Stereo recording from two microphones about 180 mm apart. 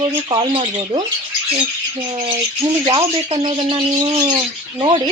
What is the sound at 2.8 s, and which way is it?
Speech, 30° right (ahead or behind).